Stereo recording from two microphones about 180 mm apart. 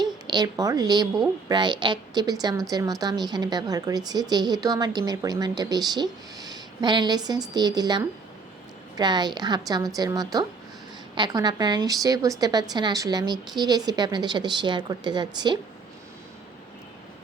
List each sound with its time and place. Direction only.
0.0 s a woman's voice: 25° right (ahead or behind)